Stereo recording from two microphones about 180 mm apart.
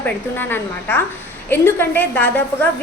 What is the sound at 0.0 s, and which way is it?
A woman's voice, 10° left (ahead or behind).